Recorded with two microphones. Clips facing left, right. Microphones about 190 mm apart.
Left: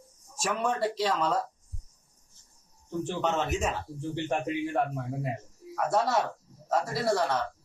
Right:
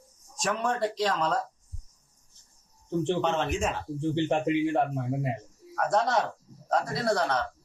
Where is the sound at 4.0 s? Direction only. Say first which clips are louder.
Right 5 dB; 20° right (ahead or behind).